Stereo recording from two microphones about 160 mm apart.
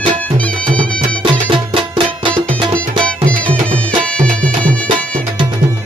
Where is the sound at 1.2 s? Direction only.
30° right (ahead or behind).